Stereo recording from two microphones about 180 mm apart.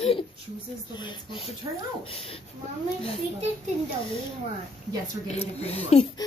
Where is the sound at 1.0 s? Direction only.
25° left (ahead or behind).